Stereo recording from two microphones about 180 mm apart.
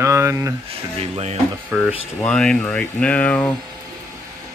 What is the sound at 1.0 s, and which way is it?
Speech, 35° right (ahead or behind).